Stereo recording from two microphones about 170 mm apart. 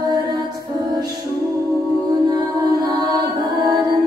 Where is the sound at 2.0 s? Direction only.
20° right (ahead or behind).